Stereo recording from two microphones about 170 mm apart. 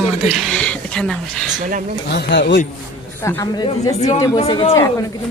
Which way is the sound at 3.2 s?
15° left (ahead or behind).